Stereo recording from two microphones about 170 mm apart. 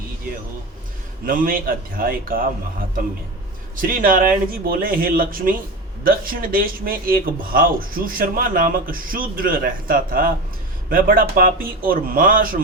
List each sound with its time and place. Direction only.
1.2 s a man's voice: 55° right (ahead or behind)
3.8 s a man's voice: 55° right (ahead or behind)